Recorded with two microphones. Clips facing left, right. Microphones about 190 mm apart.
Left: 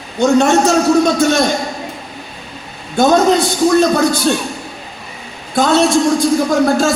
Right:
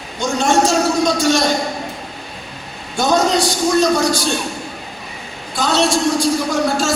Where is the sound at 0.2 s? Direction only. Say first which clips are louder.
Left 8 dB; 60° left (ahead or behind).